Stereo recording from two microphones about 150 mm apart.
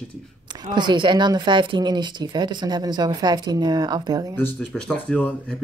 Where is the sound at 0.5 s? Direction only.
30° right (ahead or behind).